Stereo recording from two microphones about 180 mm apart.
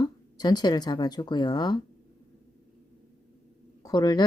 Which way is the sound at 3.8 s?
20° left (ahead or behind).